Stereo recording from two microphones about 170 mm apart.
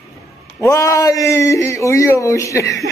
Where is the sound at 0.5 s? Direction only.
15° left (ahead or behind).